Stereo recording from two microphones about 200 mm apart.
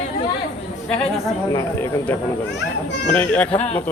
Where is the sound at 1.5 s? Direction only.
15° left (ahead or behind).